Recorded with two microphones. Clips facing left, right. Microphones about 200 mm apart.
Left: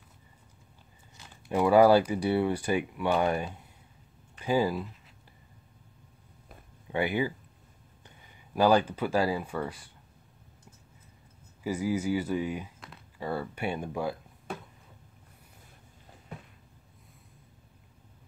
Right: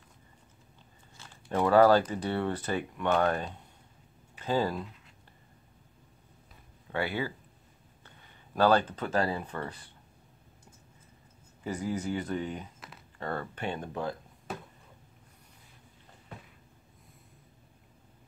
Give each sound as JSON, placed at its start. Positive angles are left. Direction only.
{"t": 1.1, "sound": "speech", "side_deg": 10}
{"t": 6.9, "sound": "speech", "side_deg": 15}
{"t": 8.5, "sound": "speech", "side_deg": 10}
{"t": 11.6, "sound": "speech", "side_deg": 10}